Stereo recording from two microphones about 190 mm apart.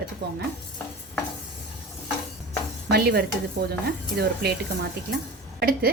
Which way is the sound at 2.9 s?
55° right (ahead or behind).